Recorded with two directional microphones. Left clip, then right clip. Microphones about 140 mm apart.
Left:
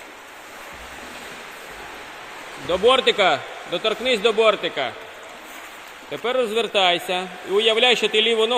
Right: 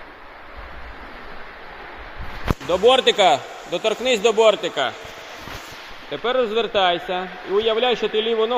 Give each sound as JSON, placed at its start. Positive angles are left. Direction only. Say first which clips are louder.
{"t": 2.6, "sound": "a man's voice", "louder": "right 1 dB", "side_deg": -10}
{"t": 6.1, "sound": "a man's voice", "louder": "right 1 dB", "side_deg": -5}